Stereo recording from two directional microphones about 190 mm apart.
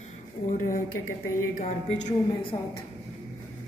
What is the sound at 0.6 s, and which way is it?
Speech, 45° left (ahead or behind).